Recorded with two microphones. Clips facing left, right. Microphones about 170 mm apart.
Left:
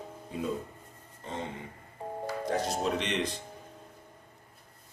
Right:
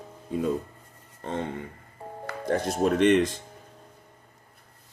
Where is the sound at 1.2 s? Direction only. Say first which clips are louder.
Right 6 dB; 60° right (ahead or behind).